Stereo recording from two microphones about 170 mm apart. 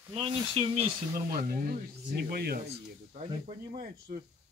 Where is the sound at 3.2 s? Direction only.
45° right (ahead or behind).